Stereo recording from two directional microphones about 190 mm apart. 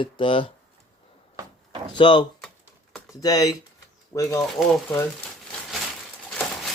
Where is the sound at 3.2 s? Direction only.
20° left (ahead or behind).